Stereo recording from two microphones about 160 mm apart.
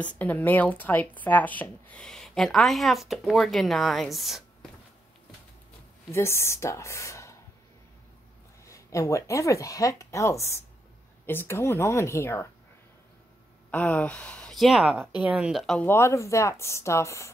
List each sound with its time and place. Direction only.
0.0 s a woman's voice: 10° left (ahead or behind)
6.1 s speech: 15° left (ahead or behind)
8.6 s speech: 20° left (ahead or behind)
13.7 s speech: 10° left (ahead or behind)